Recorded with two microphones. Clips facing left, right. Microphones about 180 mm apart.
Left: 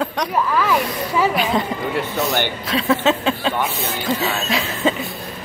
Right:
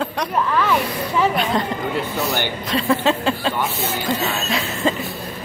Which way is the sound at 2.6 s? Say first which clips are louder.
Even; centre (ahead or behind).